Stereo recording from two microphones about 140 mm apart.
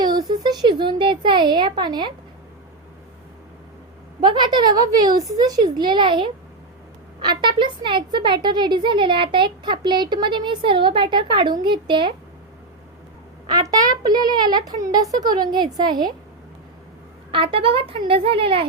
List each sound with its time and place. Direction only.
0.2 s speech: 30° right (ahead or behind)
4.2 s speech: 30° right (ahead or behind)
13.5 s a child's voice: 25° right (ahead or behind)
17.3 s speech: 40° right (ahead or behind)